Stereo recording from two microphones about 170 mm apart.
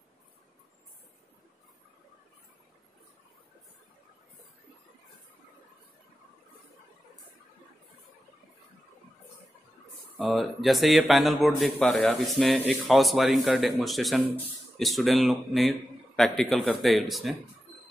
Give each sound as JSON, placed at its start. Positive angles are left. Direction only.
{"t": 10.1, "sound": "speech", "side_deg": 0}